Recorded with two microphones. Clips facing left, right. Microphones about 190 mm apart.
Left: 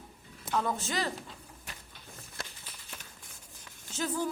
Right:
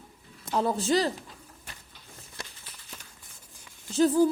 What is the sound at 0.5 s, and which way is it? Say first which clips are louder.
Speech: right 7 dB; 35° right (ahead or behind).